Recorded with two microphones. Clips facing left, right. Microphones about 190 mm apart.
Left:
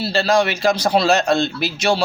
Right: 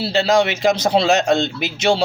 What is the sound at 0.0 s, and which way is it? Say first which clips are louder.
A man's voice: right 1 dB; 20° right (ahead or behind).